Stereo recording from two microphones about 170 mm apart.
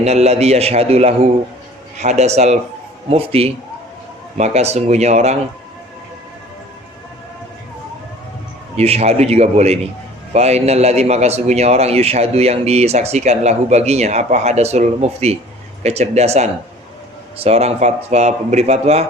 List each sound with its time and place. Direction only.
0.0 s a man's voice: 40° right (ahead or behind)
8.7 s a man's voice: 40° right (ahead or behind)